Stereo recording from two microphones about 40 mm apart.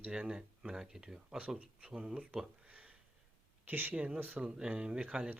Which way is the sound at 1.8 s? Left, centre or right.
Right.